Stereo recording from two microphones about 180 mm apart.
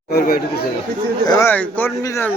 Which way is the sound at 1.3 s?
15° left (ahead or behind).